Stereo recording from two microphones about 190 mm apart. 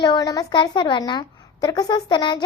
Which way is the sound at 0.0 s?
20° left (ahead or behind).